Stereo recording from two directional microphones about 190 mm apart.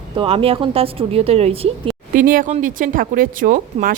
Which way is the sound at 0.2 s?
30° right (ahead or behind).